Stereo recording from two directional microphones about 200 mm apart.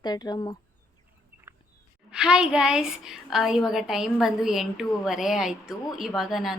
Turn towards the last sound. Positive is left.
turn(degrees=0)  # may be behind; listen again after turning